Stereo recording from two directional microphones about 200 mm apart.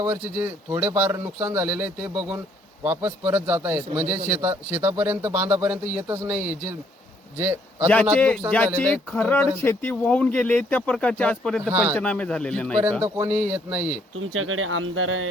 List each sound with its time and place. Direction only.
0.0 s a man's voice: 10° right (ahead or behind)
8.5 s speech: 5° left (ahead or behind)
11.6 s speech: 10° right (ahead or behind)
11.9 s a man's voice: 5° left (ahead or behind)
12.8 s speech: 10° right (ahead or behind)
14.2 s speech: 90° right